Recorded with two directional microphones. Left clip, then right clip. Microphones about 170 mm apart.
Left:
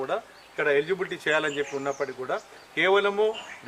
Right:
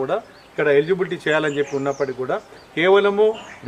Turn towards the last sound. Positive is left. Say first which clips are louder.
# right 7 dB
turn(degrees=-10)  # may be behind; listen again after turning